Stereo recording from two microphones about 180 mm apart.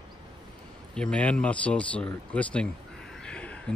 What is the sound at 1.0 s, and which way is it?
Speech, 5° left (ahead or behind).